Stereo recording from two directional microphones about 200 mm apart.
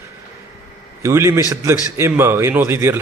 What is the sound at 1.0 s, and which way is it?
A man's voice, 15° right (ahead or behind).